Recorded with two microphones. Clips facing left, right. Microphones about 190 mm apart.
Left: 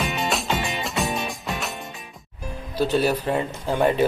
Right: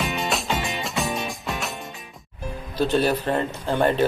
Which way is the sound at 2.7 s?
10° left (ahead or behind).